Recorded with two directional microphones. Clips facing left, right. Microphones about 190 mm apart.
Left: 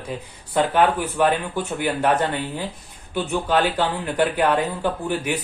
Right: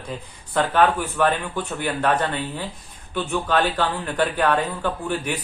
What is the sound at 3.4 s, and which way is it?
Speech, 10° left (ahead or behind).